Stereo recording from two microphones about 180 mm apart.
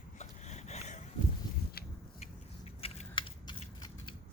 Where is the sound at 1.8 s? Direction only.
60° left (ahead or behind).